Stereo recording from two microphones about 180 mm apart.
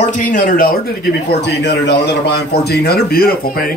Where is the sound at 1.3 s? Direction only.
70° left (ahead or behind).